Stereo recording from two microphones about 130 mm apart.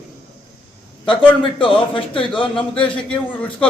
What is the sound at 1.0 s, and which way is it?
A man's voice, 40° left (ahead or behind).